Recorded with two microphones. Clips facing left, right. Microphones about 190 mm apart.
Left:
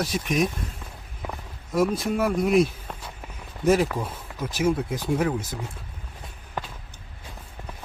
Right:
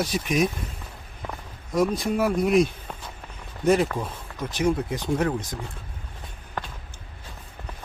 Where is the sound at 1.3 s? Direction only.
5° left (ahead or behind).